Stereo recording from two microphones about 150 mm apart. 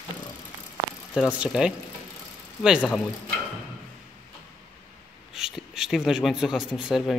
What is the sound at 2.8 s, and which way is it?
Speech, 5° left (ahead or behind).